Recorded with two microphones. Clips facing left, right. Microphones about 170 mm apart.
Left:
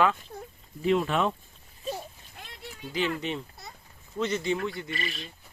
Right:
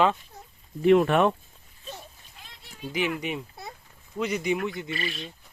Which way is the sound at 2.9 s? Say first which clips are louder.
Right 1 dB; 15° right (ahead or behind).